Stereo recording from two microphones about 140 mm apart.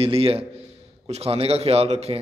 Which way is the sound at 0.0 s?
45° right (ahead or behind).